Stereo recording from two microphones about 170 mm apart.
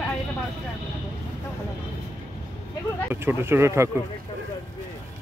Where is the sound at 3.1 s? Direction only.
15° right (ahead or behind).